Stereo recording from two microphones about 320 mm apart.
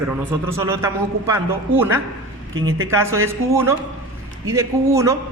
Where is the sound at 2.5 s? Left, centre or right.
Right.